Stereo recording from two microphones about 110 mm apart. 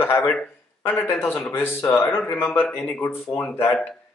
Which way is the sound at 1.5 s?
20° left (ahead or behind).